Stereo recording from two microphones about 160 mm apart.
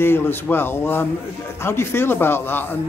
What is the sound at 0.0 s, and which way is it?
A man's voice, 15° left (ahead or behind).